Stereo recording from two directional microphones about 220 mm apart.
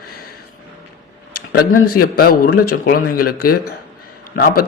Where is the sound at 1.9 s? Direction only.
40° left (ahead or behind).